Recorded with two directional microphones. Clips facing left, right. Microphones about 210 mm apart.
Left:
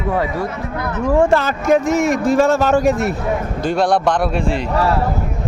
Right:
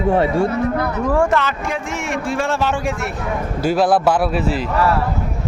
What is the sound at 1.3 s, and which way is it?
A man's voice, 40° left (ahead or behind).